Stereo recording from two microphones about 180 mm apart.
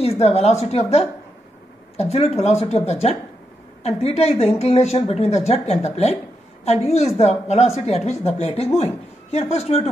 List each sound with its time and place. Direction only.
0.0 s speech: 35° left (ahead or behind)